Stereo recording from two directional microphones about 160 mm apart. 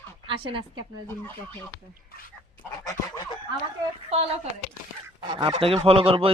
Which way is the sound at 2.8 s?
20° left (ahead or behind).